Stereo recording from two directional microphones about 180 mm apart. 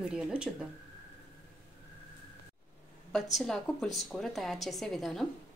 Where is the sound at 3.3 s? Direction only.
Centre (ahead or behind).